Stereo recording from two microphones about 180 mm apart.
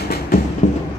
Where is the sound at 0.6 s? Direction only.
40° left (ahead or behind).